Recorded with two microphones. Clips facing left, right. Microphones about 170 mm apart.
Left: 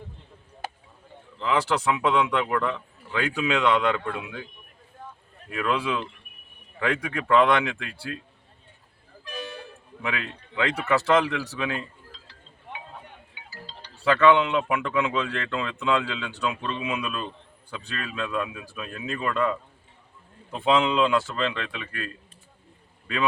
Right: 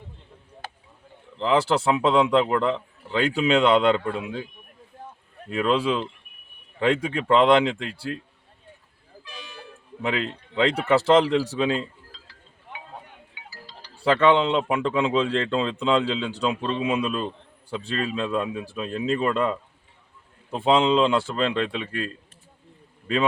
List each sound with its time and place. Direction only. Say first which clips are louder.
1.4 s speech: right 4 dB; 30° right (ahead or behind)
5.5 s speech: right 4 dB; 25° right (ahead or behind)
9.2 s toot: left 8 dB; 50° left (ahead or behind)
10.0 s speech: right 5 dB; 30° right (ahead or behind)
14.0 s speech: even; 30° right (ahead or behind)